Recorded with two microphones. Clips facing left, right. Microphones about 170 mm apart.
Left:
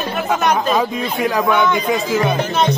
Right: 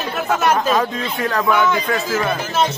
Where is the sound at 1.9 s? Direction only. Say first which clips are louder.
Left 3 dB; 15° left (ahead or behind).